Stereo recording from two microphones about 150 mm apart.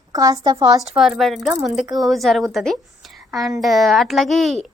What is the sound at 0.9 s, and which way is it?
A woman's voice, 5° right (ahead or behind).